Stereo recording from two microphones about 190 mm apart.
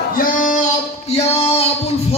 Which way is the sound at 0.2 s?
45° left (ahead or behind).